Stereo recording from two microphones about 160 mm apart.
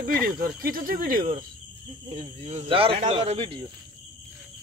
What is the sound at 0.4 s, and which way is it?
Speech, 65° right (ahead or behind).